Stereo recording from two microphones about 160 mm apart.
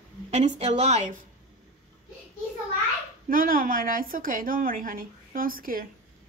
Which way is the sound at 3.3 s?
60° right (ahead or behind).